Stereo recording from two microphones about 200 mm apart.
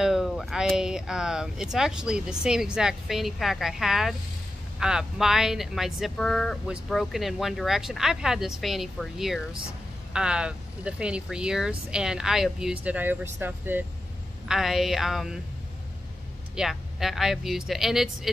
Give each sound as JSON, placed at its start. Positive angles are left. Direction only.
{"t": 0.0, "sound": "speech", "side_deg": 0}
{"t": 16.5, "sound": "speech", "side_deg": 0}